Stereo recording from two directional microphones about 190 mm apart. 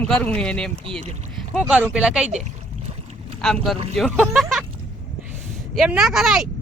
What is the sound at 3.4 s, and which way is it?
Speech, centre (ahead or behind).